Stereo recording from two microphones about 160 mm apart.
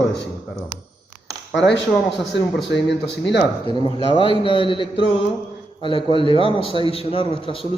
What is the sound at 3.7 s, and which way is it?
A man's voice, 30° left (ahead or behind).